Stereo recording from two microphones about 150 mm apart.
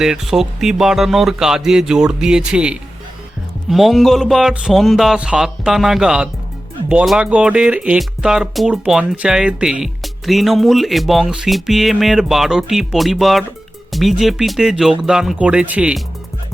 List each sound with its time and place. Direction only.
0.0 s speech: 5° right (ahead or behind)